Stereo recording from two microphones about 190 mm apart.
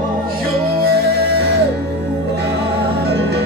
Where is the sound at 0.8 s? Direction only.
55° right (ahead or behind).